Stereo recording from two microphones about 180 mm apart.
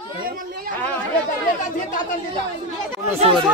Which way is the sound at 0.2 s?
55° right (ahead or behind).